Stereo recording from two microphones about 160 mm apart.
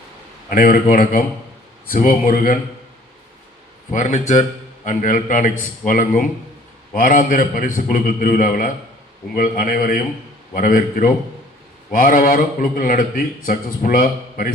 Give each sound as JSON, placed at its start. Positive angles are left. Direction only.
{"t": 0.5, "sound": "a man's voice", "side_deg": 60}
{"t": 3.9, "sound": "a man's voice", "side_deg": 50}